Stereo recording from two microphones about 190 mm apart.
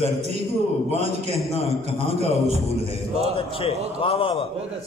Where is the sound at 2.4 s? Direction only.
35° right (ahead or behind).